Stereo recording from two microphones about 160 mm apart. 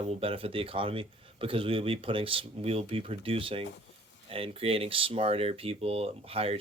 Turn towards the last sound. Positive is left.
turn(degrees=-35)  # may be behind; listen again after turning